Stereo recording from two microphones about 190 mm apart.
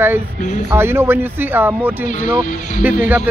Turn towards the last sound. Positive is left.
turn(degrees=-10)  # may be behind; listen again after turning